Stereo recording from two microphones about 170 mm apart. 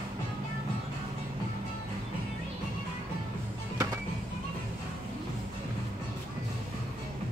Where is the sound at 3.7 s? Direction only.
20° right (ahead or behind).